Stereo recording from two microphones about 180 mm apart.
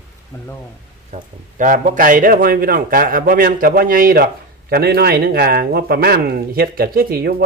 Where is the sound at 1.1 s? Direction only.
45° right (ahead or behind).